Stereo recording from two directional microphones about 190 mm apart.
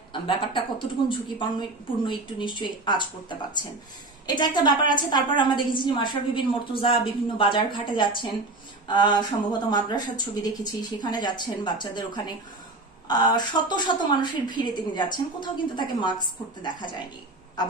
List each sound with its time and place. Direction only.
0.1 s a woman's voice: 25° left (ahead or behind)